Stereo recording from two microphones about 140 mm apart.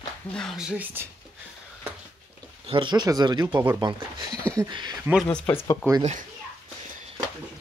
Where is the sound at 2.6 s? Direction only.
35° right (ahead or behind).